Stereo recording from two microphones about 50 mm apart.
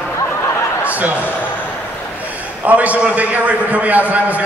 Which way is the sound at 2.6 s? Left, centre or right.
Right.